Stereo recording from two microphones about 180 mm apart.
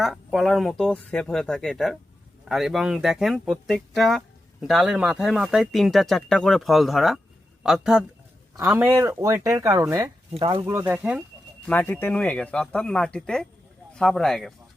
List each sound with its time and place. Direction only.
0.0 s speech: centre (ahead or behind)
8.5 s speech: 10° right (ahead or behind)
10.4 s speech: 25° right (ahead or behind)
10.7 s speech: 10° right (ahead or behind)
11.6 s speech: 10° left (ahead or behind)